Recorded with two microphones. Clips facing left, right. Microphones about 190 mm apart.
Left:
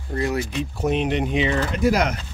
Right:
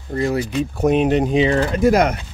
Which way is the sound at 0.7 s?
50° right (ahead or behind).